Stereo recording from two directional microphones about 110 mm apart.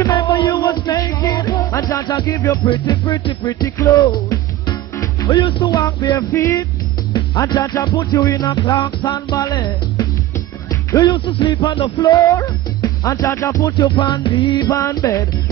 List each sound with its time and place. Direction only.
0.1 s music: 40° left (ahead or behind)
5.4 s music: 50° left (ahead or behind)
5.7 s music: 30° left (ahead or behind)
11.1 s music: 50° left (ahead or behind)
12.0 s music: 30° left (ahead or behind)
13.9 s music: 45° left (ahead or behind)
14.7 s music: 30° left (ahead or behind)